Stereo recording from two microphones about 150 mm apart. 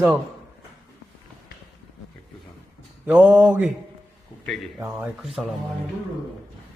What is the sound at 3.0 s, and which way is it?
Speech, 10° right (ahead or behind).